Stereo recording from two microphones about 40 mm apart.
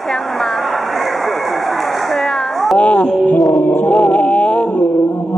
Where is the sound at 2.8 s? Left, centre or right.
Left.